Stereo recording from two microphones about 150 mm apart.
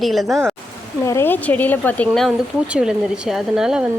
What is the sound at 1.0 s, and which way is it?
Speech, 15° left (ahead or behind).